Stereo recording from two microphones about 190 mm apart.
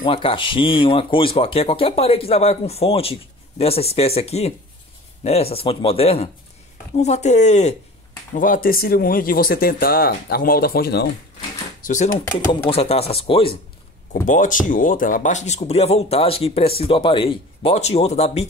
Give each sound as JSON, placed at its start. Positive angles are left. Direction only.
{"t": 0.0, "sound": "speech", "side_deg": 30}
{"t": 11.8, "sound": "speech", "side_deg": 40}
{"t": 14.2, "sound": "speech", "side_deg": 40}